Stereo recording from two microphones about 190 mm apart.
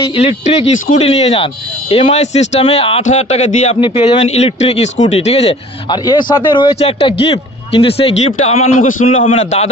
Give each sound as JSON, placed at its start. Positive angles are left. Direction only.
{"t": 0.0, "sound": "speech", "side_deg": 30}